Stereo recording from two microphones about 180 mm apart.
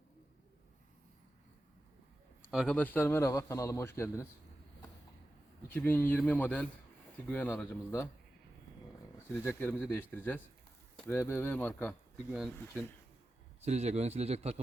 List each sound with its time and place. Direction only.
2.5 s a man's voice: centre (ahead or behind)
2.7 s a man's voice: 10° left (ahead or behind)
5.6 s a man's voice: 10° left (ahead or behind)
9.3 s a man's voice: 15° left (ahead or behind)
13.6 s a man's voice: 35° right (ahead or behind)